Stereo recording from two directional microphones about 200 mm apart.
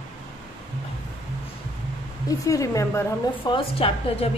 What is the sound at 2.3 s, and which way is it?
A woman's voice, 15° left (ahead or behind).